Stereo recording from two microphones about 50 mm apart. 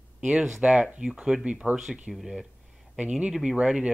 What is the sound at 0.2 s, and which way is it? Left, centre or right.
Speech, centre.